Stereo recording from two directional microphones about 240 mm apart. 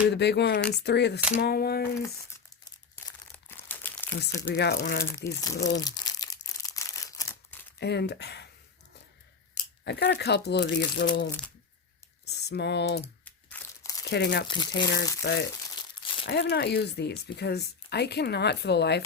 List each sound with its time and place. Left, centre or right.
0.1 s speech: left
2.9 s crumpling: centre
4.2 s speech: left
5.1 s speech: centre
5.8 s a sound: centre
7.8 s speech: left
9.8 s speech: left
13.2 s crumpling: centre
14.0 s speech: left
14.4 s speech: centre
15.2 s speech: left